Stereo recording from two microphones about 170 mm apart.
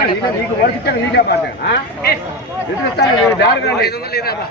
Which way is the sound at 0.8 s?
65° left (ahead or behind).